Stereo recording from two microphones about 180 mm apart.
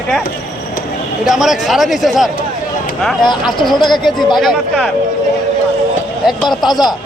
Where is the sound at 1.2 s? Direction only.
Centre (ahead or behind).